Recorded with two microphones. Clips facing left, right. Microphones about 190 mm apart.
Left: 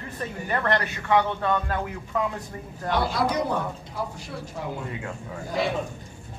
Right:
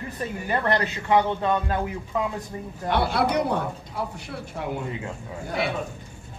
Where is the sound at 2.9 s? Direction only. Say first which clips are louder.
Right 2 dB; 65° right (ahead or behind).